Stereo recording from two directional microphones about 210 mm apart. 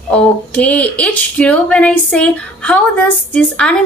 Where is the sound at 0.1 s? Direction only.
5° left (ahead or behind).